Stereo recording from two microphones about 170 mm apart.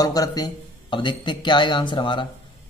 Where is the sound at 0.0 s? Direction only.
20° left (ahead or behind).